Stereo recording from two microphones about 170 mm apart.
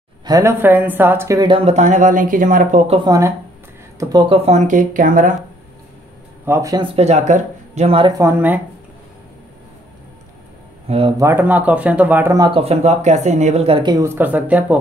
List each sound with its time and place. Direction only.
0.2 s speech: 20° right (ahead or behind)
1.5 s speech: 40° right (ahead or behind)
2.9 s speech: 25° right (ahead or behind)
4.5 s speech: 45° right (ahead or behind)
6.4 s speech: 15° right (ahead or behind); by 8.1 s 35° right (ahead or behind)
8.2 s speech: 10° right (ahead or behind)
10.9 s speech: 35° right (ahead or behind)
11.1 s speech: 15° right (ahead or behind)
12.4 s speech: 30° right (ahead or behind)
13.9 s speech: 15° right (ahead or behind)